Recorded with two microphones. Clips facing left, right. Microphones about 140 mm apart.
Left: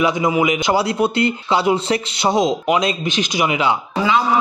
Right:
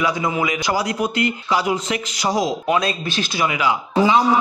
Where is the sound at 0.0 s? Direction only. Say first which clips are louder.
Left 4 dB; 20° left (ahead or behind).